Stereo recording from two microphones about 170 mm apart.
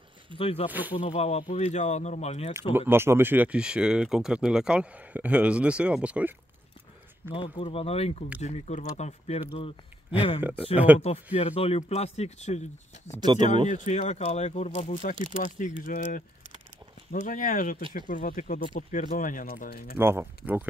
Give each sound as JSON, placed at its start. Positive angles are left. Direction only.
{"t": 0.4, "sound": "speech", "side_deg": 35}
{"t": 0.7, "sound": "speech", "side_deg": -10}
{"t": 0.9, "sound": "speech", "side_deg": 35}
{"t": 2.9, "sound": "speech", "side_deg": -15}
{"t": 7.3, "sound": "speech", "side_deg": 35}
{"t": 10.9, "sound": "speech", "side_deg": -10}
{"t": 11.3, "sound": "speech", "side_deg": 40}
{"t": 13.2, "sound": "speech", "side_deg": -25}
{"t": 13.7, "sound": "speech", "side_deg": 45}
{"t": 20.0, "sound": "speech", "side_deg": -15}